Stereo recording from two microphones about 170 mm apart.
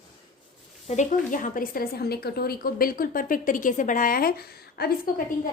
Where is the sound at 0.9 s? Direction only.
45° left (ahead or behind); by 4.9 s 65° left (ahead or behind).